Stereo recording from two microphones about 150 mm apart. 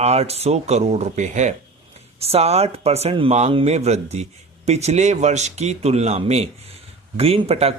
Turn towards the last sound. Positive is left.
turn(degrees=-45)  # may be behind; listen again after turning